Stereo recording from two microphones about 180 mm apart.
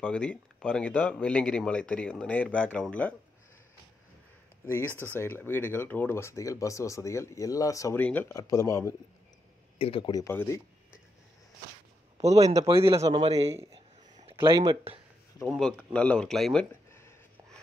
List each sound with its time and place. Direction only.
0.0 s speech: 5° left (ahead or behind)
4.6 s speech: 15° left (ahead or behind)
9.8 s speech: 30° left (ahead or behind)
10.2 s speech: 15° left (ahead or behind)
12.2 s a man's voice: 35° right (ahead or behind)
14.3 s a sound: 15° right (ahead or behind)
14.6 s a man's voice: 30° right (ahead or behind)
15.4 s speech: 5° left (ahead or behind)